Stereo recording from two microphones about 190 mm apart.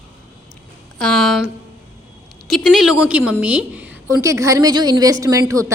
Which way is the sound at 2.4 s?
Centre (ahead or behind).